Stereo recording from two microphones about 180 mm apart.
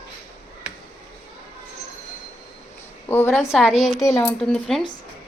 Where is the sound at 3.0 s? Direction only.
10° left (ahead or behind).